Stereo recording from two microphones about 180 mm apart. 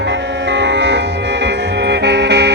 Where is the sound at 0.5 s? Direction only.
70° right (ahead or behind).